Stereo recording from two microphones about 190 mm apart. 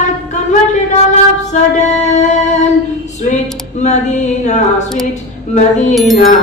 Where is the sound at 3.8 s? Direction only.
40° left (ahead or behind).